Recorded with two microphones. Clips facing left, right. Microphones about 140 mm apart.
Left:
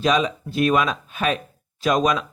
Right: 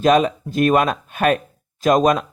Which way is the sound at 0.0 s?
50° right (ahead or behind).